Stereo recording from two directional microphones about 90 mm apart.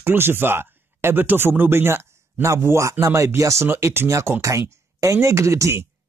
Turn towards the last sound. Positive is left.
turn(degrees=-30)  # may be behind; listen again after turning